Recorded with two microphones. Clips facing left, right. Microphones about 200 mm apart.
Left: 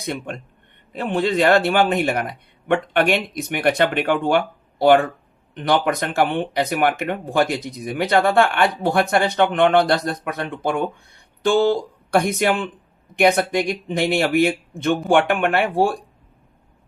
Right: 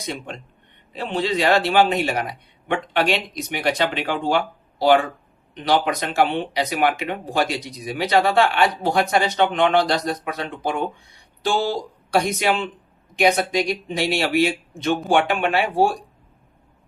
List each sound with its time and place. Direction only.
0.0 s speech: 55° left (ahead or behind)